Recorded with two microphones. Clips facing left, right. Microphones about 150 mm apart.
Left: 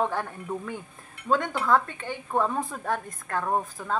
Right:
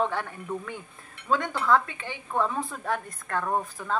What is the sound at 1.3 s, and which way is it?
Speech, 40° left (ahead or behind).